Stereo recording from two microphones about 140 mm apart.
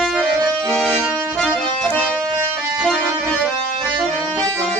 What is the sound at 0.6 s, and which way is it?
Accordion, 5° left (ahead or behind).